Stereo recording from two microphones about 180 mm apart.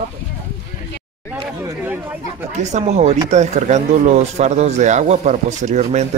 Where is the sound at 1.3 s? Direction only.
10° right (ahead or behind).